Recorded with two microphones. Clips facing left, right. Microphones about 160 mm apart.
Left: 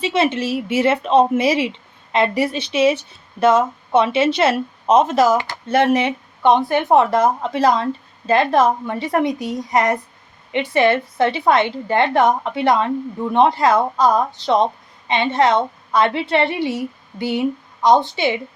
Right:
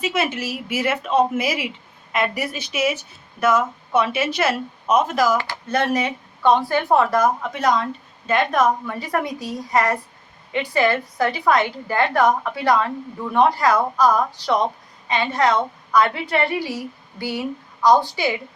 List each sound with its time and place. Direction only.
0.0 s a woman's voice: 30° left (ahead or behind)